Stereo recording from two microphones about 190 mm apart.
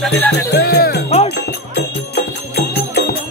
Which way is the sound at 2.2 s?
55° left (ahead or behind).